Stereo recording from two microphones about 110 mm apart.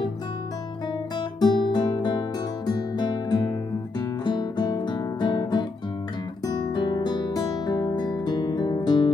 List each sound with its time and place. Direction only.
1.1 s guitar: 40° left (ahead or behind)
6.4 s music: 40° left (ahead or behind)